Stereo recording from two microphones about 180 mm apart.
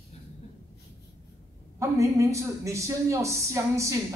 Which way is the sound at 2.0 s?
15° right (ahead or behind).